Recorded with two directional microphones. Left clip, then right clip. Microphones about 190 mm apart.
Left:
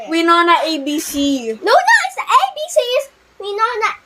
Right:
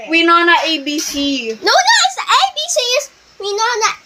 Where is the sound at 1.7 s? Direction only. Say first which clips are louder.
Even; centre (ahead or behind).